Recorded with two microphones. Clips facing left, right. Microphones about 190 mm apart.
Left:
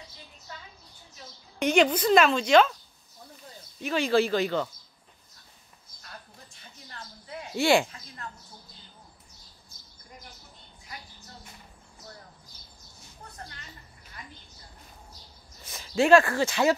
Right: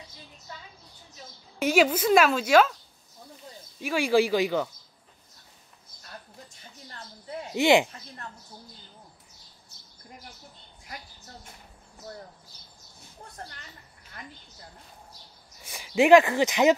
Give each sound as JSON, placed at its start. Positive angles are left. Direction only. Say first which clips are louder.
{"t": 1.6, "sound": "speech", "louder": "even", "side_deg": -5}
{"t": 3.8, "sound": "speech", "louder": "right 1 dB", "side_deg": -10}
{"t": 7.5, "sound": "speech", "louder": "right 2 dB", "side_deg": -20}
{"t": 15.6, "sound": "speech", "louder": "right 2 dB", "side_deg": -15}